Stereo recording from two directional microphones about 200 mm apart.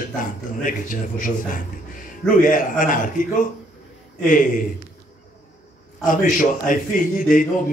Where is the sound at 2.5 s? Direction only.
45° left (ahead or behind).